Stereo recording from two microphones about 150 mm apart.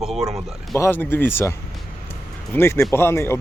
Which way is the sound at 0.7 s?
15° left (ahead or behind).